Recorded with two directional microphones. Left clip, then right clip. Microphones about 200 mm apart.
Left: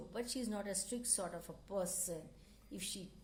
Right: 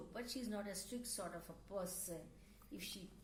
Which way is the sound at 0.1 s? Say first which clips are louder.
Left 5 dB; 45° left (ahead or behind).